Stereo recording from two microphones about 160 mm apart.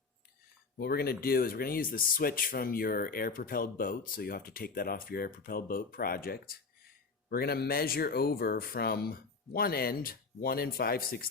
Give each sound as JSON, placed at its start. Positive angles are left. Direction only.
{"t": 0.8, "sound": "speech", "side_deg": 75}